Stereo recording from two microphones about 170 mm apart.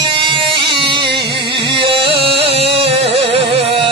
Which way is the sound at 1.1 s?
75° right (ahead or behind).